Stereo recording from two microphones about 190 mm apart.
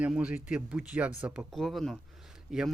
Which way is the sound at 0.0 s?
5° right (ahead or behind).